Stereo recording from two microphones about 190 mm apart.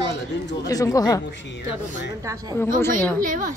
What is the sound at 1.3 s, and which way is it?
Speech, 65° left (ahead or behind).